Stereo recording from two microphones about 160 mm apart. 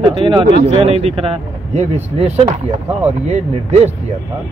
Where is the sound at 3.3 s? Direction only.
45° right (ahead or behind).